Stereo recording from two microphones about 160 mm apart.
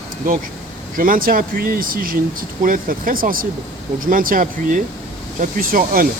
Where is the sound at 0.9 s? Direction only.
60° right (ahead or behind).